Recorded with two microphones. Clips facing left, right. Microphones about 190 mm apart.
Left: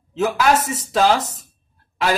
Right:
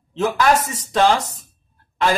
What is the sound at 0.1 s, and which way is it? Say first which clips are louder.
A man's voice: even; 5° left (ahead or behind).